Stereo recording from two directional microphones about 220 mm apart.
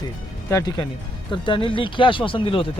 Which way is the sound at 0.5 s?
15° left (ahead or behind).